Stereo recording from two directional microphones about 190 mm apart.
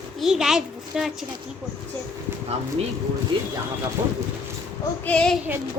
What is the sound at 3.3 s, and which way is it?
Speech, 25° right (ahead or behind).